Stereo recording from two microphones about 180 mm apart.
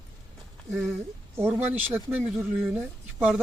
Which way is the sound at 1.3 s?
10° right (ahead or behind).